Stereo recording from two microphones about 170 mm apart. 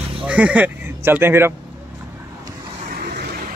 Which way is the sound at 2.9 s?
60° right (ahead or behind).